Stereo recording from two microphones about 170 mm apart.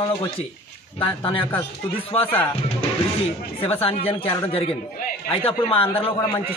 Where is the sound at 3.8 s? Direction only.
35° left (ahead or behind).